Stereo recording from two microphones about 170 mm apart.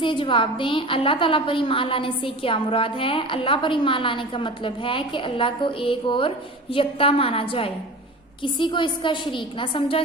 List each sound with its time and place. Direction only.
0.0 s a woman's voice: 30° left (ahead or behind)